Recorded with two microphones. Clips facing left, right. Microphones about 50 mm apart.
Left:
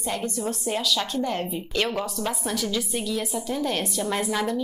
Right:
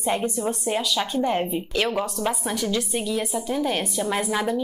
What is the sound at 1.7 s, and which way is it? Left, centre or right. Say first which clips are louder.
A woman's voice: right 1 dB; centre.